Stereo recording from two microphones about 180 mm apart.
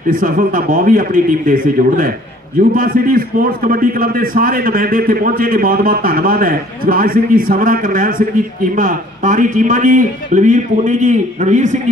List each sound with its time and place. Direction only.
0.1 s a man's voice: 50° right (ahead or behind)